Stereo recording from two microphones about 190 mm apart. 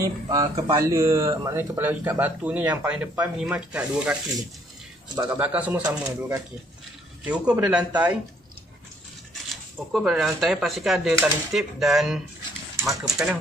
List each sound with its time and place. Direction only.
0.0 s speech: 20° right (ahead or behind)
5.1 s speech: 25° right (ahead or behind)
5.4 s speech: 10° right (ahead or behind)
9.9 s speech: centre (ahead or behind)